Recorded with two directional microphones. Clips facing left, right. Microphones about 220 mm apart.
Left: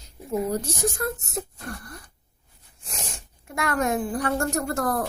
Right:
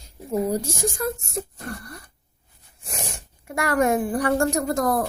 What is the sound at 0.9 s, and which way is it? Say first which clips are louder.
Speech: right 2 dB; 10° right (ahead or behind).